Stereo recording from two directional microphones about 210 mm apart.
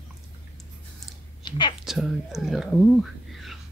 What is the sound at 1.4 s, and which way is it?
Speech, 20° left (ahead or behind).